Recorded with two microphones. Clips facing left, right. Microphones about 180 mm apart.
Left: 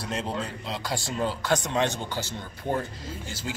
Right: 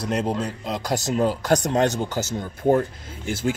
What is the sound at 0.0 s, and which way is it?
Speech, 45° right (ahead or behind).